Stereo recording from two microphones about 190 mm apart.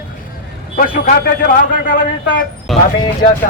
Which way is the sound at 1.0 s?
55° left (ahead or behind).